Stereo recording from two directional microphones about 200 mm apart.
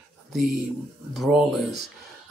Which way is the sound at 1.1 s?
Centre (ahead or behind).